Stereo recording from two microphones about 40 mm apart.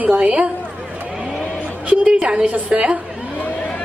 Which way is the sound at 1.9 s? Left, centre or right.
Right.